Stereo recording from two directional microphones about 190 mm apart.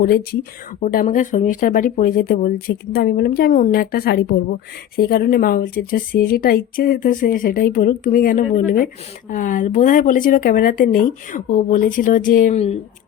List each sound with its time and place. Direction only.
0.0 s speech: 55° left (ahead or behind)
12.5 s speech: 35° left (ahead or behind)